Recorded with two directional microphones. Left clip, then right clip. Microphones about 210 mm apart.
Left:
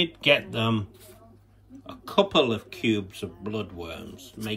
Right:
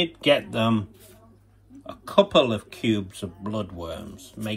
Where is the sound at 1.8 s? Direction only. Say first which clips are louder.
Right 4 dB; 5° left (ahead or behind).